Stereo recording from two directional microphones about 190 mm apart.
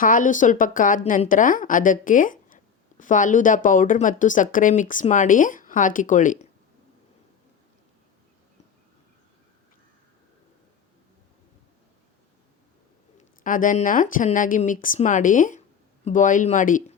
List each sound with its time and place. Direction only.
0.0 s speech: 45° left (ahead or behind)
13.4 s speech: 45° left (ahead or behind)